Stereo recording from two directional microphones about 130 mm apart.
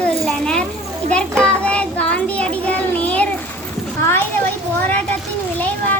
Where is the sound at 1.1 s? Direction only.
10° left (ahead or behind).